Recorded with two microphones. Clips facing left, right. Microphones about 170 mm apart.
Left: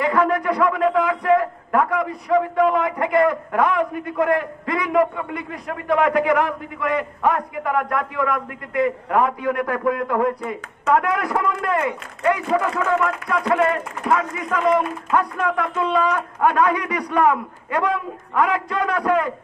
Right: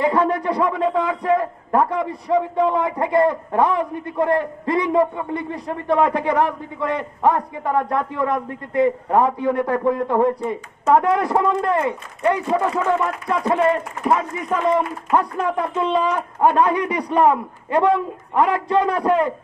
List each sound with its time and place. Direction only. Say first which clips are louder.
0.0 s a man's voice: right 1 dB; 25° right (ahead or behind)